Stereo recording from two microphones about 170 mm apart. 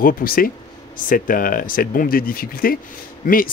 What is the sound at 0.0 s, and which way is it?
Speech, 55° left (ahead or behind).